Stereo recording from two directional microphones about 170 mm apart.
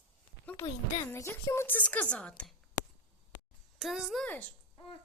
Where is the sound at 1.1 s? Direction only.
15° left (ahead or behind).